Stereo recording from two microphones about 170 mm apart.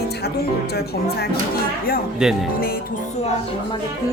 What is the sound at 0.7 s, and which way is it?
Music, 65° left (ahead or behind).